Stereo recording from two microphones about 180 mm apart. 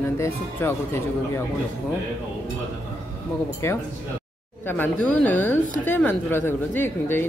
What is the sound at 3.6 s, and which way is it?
Speech, 15° left (ahead or behind).